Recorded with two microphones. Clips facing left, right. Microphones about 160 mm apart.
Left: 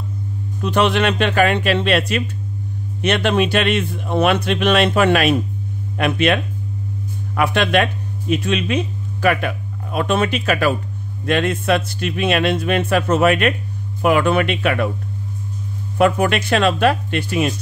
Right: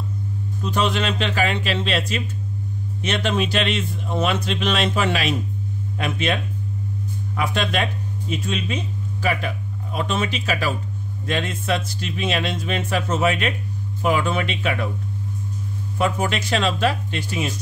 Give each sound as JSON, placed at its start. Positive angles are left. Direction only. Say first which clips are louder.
{"t": 0.6, "sound": "speech", "louder": "left 6 dB", "side_deg": 70}
{"t": 16.0, "sound": "speech", "louder": "left 7 dB", "side_deg": 60}